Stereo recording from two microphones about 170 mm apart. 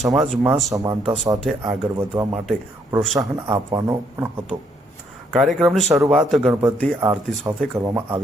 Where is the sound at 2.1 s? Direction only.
30° right (ahead or behind).